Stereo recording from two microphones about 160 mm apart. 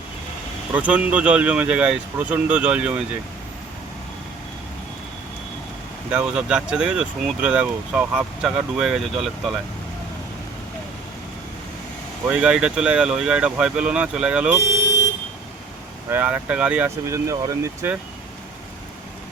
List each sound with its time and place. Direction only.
0.7 s speech: 10° right (ahead or behind)
6.1 s speech: 5° right (ahead or behind)
12.3 s speech: 5° right (ahead or behind)
16.0 s speech: 10° right (ahead or behind)